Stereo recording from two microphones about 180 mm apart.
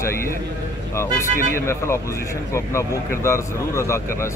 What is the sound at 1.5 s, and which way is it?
Speech, 15° left (ahead or behind).